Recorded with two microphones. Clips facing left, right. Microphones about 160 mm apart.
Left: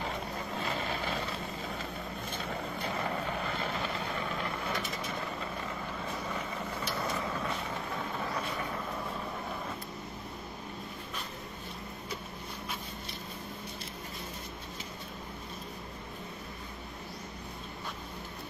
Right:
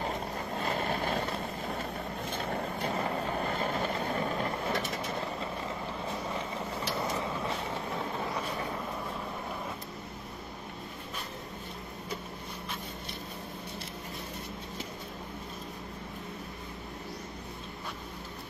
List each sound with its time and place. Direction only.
0.6 s vehicle: 50° right (ahead or behind)
2.9 s vehicle: 35° right (ahead or behind)
7.0 s vehicle: 25° right (ahead or behind)